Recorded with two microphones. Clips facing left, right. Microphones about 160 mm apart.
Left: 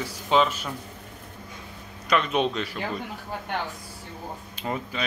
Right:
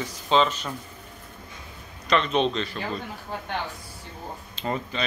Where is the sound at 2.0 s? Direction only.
10° left (ahead or behind).